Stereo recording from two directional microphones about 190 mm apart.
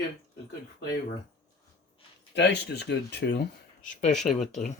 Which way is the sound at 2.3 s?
65° left (ahead or behind).